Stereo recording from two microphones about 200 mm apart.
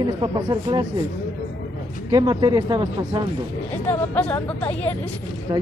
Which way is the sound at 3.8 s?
10° left (ahead or behind).